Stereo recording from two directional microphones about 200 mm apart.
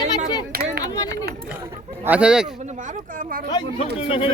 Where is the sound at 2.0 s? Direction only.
5° right (ahead or behind).